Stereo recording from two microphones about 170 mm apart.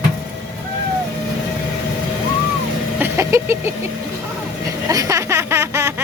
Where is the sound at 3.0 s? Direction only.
15° right (ahead or behind).